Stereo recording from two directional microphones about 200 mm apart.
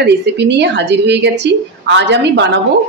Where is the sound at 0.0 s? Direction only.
55° right (ahead or behind).